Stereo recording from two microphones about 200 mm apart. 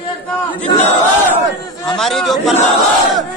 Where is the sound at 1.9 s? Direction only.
Centre (ahead or behind).